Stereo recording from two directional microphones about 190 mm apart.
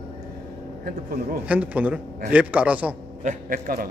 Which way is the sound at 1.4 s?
5° right (ahead or behind).